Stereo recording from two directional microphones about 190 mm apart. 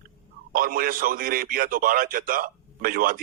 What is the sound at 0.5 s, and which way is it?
A man's voice, 50° right (ahead or behind).